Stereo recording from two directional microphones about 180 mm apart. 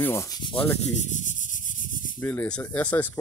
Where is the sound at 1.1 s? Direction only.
45° left (ahead or behind).